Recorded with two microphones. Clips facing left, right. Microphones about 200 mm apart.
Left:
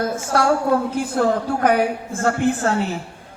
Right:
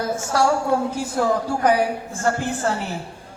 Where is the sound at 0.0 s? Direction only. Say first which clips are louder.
Left 1 dB; 55° left (ahead or behind).